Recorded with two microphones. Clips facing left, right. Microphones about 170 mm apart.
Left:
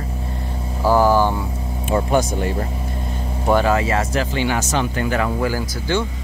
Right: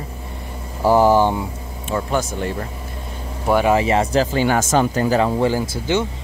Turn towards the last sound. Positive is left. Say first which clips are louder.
# right 2 dB
turn(degrees=-20)  # may be behind; listen again after turning